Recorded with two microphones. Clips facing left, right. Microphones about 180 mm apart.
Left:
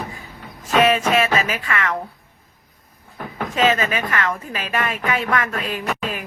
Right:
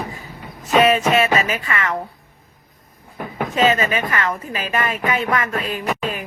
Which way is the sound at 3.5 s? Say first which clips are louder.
Right 1 dB; centre (ahead or behind).